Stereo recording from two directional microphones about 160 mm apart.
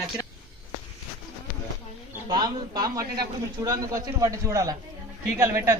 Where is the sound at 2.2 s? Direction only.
25° right (ahead or behind).